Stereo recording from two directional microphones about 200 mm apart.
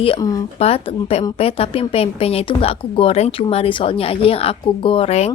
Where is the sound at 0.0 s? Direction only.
25° left (ahead or behind).